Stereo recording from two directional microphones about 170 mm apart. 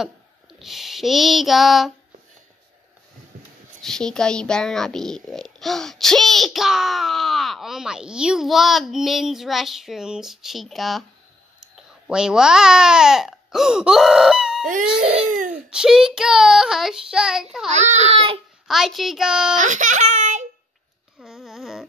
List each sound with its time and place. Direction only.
0.0 s a sound: centre (ahead or behind)
3.8 s speech: 5° left (ahead or behind)
17.6 s speech: 40° right (ahead or behind)
18.7 s speech: centre (ahead or behind)
19.5 s speech: 50° right (ahead or behind)
21.2 s a sound: centre (ahead or behind)